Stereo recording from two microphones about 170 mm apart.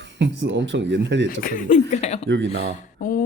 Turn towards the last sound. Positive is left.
turn(degrees=50)  # may be behind; listen again after turning